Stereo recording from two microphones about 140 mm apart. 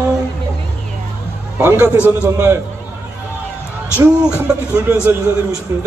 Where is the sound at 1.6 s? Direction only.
15° right (ahead or behind).